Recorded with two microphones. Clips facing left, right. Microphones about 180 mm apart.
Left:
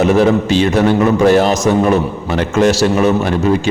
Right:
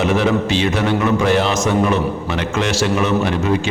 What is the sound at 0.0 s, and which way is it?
A man's voice, 40° left (ahead or behind).